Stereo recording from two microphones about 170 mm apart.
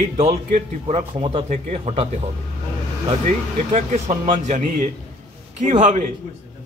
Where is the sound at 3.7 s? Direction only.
40° right (ahead or behind).